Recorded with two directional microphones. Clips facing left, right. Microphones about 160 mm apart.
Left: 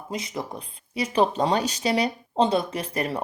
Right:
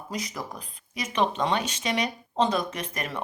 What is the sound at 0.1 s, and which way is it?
A woman's voice, 25° left (ahead or behind).